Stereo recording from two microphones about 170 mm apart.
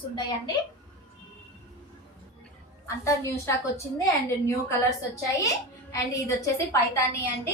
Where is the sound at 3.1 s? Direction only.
15° left (ahead or behind).